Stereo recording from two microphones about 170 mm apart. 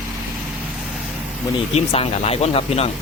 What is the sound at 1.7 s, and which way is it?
Speech, 35° left (ahead or behind).